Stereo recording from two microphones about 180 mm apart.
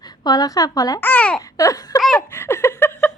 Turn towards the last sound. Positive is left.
turn(degrees=10)  # may be behind; listen again after turning